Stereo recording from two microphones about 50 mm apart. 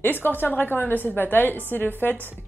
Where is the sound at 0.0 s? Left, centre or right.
Left.